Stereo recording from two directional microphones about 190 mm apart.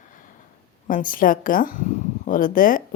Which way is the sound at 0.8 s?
45° left (ahead or behind).